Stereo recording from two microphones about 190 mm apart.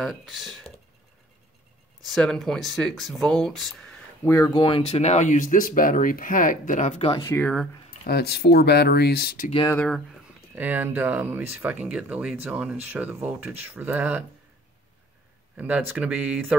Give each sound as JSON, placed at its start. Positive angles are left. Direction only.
{"t": 0.0, "sound": "speech", "side_deg": 0}
{"t": 2.0, "sound": "speech", "side_deg": 0}
{"t": 4.3, "sound": "speech", "side_deg": 20}
{"t": 7.2, "sound": "speech", "side_deg": 5}
{"t": 8.0, "sound": "speech", "side_deg": 55}
{"t": 9.7, "sound": "speech", "side_deg": 5}
{"t": 10.5, "sound": "speech", "side_deg": -10}
{"t": 15.5, "sound": "speech", "side_deg": -10}